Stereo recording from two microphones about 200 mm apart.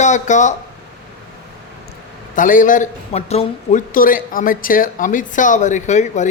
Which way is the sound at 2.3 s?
40° left (ahead or behind).